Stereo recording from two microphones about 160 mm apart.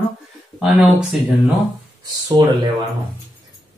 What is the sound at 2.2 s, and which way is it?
Speech, 25° right (ahead or behind).